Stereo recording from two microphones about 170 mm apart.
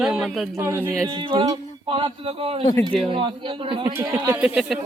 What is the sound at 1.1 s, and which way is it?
Speech, 30° right (ahead or behind).